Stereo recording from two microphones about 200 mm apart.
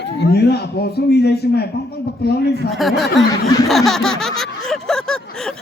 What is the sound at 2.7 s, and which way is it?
Speech, centre (ahead or behind).